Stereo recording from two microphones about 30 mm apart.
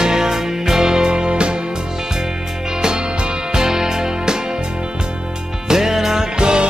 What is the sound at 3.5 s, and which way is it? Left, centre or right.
Music, right.